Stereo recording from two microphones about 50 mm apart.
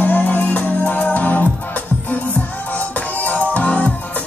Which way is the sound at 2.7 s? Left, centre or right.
Left.